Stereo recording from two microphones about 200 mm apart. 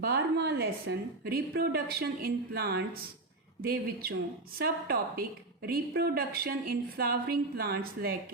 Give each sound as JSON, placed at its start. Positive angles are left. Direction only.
{"t": 0.0, "sound": "a woman's voice", "side_deg": -55}